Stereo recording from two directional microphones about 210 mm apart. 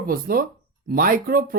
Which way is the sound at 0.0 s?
45° right (ahead or behind).